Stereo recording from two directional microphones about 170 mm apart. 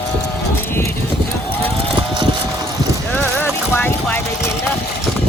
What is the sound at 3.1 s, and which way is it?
Clip-clop, 10° left (ahead or behind).